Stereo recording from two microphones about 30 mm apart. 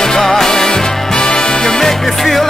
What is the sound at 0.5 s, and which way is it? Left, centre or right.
Music, left.